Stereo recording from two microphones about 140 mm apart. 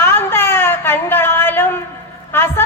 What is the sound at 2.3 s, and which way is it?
Music, 15° left (ahead or behind).